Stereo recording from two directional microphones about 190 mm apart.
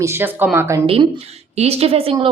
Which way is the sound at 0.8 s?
30° right (ahead or behind).